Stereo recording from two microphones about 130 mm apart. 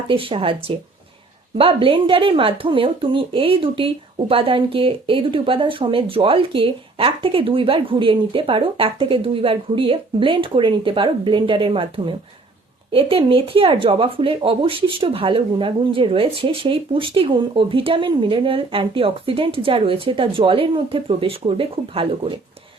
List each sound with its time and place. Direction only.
0.1 s a woman's voice: 45° right (ahead or behind)